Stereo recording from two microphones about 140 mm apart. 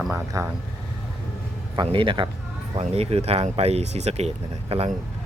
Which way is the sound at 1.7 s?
35° right (ahead or behind).